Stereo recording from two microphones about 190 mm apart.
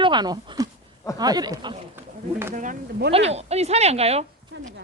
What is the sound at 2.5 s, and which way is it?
A woman's voice, 40° right (ahead or behind).